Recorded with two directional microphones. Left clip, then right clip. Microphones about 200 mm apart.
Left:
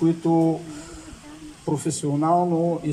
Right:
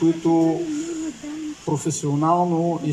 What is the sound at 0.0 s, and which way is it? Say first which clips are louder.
Speech: right 2 dB; centre (ahead or behind).